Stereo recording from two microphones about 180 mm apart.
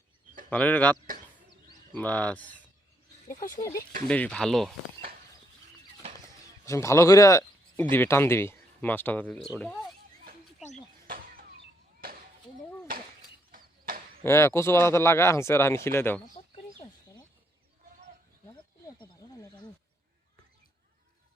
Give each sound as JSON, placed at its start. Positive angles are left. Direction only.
{"t": 0.5, "sound": "speech", "side_deg": 10}
{"t": 3.5, "sound": "speech", "side_deg": 20}
{"t": 4.1, "sound": "speech", "side_deg": 5}
{"t": 6.7, "sound": "speech", "side_deg": 15}
{"t": 11.0, "sound": "a sound", "side_deg": -50}
{"t": 13.5, "sound": "a sound", "side_deg": -50}
{"t": 14.3, "sound": "speech", "side_deg": 15}